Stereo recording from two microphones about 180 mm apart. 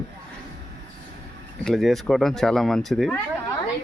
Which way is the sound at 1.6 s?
Centre (ahead or behind).